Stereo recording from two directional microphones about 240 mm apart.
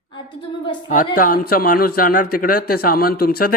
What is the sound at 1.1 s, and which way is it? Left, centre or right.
A man's voice, left.